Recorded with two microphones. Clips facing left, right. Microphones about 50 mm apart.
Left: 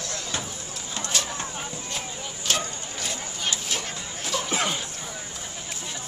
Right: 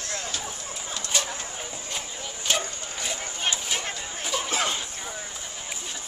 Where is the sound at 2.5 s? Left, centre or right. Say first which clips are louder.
Even; centre.